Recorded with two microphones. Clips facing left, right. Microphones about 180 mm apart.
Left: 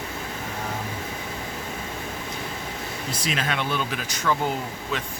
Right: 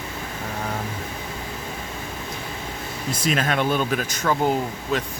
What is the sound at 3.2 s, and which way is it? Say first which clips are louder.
Speech: right 6 dB; 45° right (ahead or behind).